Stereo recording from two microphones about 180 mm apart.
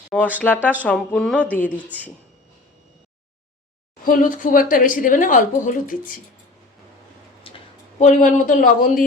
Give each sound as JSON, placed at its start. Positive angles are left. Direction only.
{"t": 0.3, "sound": "speech", "side_deg": 10}
{"t": 1.9, "sound": "speech", "side_deg": -10}
{"t": 4.0, "sound": "speech", "side_deg": 50}
{"t": 7.5, "sound": "a sound", "side_deg": 30}
{"t": 7.9, "sound": "speech", "side_deg": 45}